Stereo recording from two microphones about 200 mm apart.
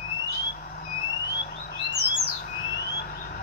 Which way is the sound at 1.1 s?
55° left (ahead or behind).